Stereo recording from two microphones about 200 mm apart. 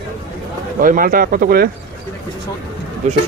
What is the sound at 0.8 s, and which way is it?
Speech, 45° right (ahead or behind).